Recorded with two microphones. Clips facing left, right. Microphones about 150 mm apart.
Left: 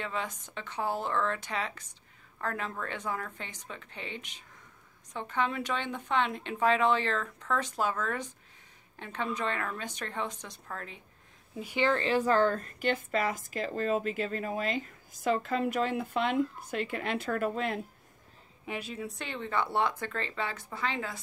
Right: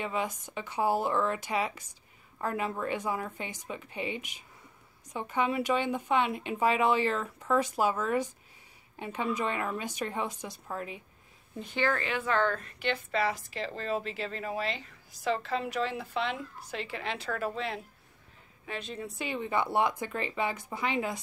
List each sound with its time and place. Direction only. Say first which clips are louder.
0.0 s a woman's voice: right 3 dB; 10° right (ahead or behind)
11.5 s speech: left 1 dB; 10° left (ahead or behind)
11.8 s speech: left 3 dB; 30° left (ahead or behind); by 17.7 s 50° left (ahead or behind)
18.7 s a woman's voice: left 1 dB; 10° left (ahead or behind); by 21.2 s 15° right (ahead or behind)